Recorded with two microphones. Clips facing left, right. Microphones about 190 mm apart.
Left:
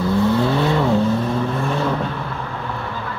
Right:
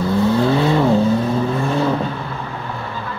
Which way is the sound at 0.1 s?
Centre (ahead or behind).